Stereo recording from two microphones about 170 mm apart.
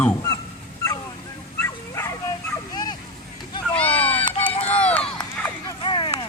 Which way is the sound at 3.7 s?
10° left (ahead or behind).